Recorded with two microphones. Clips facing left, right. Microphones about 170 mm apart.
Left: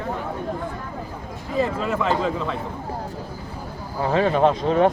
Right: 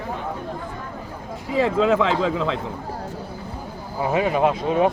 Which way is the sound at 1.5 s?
90° right.